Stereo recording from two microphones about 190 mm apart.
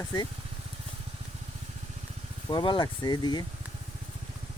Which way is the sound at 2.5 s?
25° left (ahead or behind).